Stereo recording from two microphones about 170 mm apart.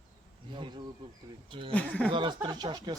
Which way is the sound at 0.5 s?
30° right (ahead or behind).